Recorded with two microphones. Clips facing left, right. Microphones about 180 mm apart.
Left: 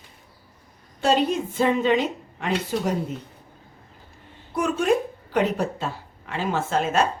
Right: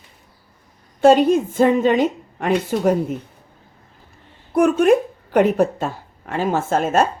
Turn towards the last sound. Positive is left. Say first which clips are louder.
# right 5 dB
turn(degrees=-50)  # may be behind; listen again after turning